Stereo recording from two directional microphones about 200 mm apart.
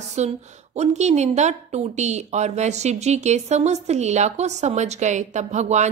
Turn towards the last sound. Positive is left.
turn(degrees=-35)  # may be behind; listen again after turning